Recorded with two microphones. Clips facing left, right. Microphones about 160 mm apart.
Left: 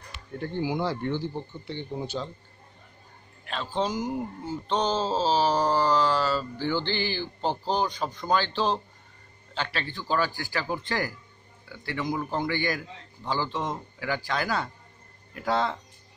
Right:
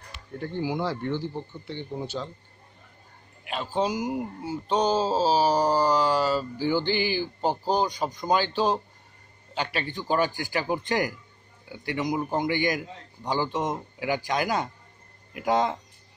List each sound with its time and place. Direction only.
0.6 s a man's voice: 5° right (ahead or behind)
3.4 s speech: 10° right (ahead or behind)